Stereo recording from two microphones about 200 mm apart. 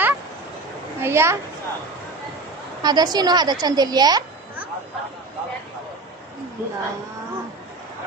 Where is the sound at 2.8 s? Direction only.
20° right (ahead or behind).